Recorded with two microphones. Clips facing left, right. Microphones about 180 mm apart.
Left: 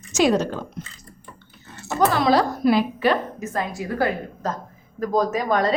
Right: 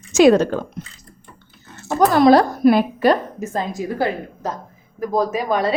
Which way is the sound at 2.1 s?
50° right (ahead or behind).